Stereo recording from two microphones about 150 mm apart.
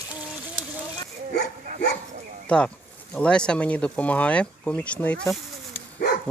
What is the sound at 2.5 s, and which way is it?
Speech, 5° left (ahead or behind).